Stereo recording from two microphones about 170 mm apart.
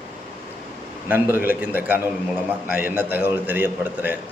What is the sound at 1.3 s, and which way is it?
A man's voice, 10° right (ahead or behind).